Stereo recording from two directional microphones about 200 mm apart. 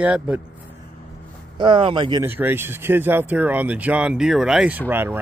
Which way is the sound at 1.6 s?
25° right (ahead or behind).